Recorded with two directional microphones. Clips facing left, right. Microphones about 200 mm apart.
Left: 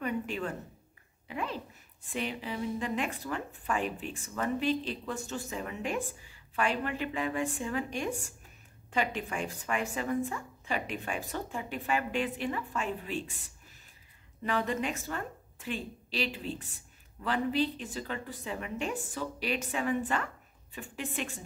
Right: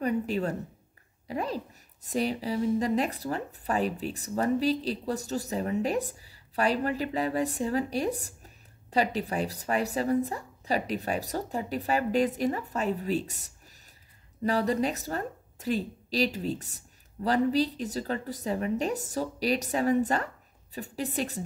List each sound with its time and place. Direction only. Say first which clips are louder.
0.0 s a woman's voice: right 6 dB; 40° right (ahead or behind)